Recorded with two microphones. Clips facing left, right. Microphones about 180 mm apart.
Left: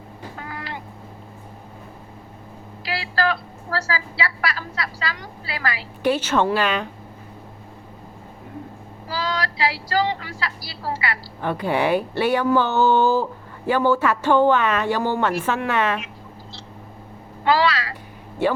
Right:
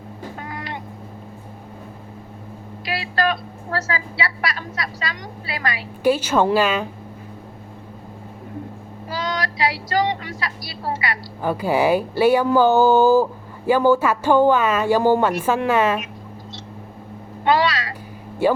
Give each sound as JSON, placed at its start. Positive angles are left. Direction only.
{"t": 0.3, "sound": "vehicle", "side_deg": -20}
{"t": 2.8, "sound": "a woman's voice", "side_deg": -20}
{"t": 6.0, "sound": "speech", "side_deg": -10}
{"t": 9.0, "sound": "speech", "side_deg": -20}
{"t": 11.4, "sound": "speech", "side_deg": -5}
{"t": 17.4, "sound": "speech", "side_deg": -20}